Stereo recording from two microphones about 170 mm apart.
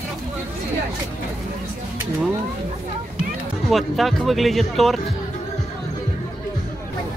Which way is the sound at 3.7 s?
Centre (ahead or behind).